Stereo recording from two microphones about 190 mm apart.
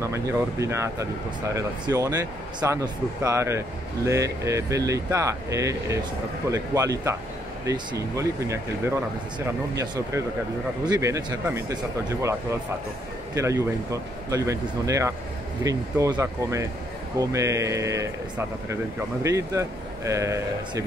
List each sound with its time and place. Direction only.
0.0 s speech: 15° right (ahead or behind)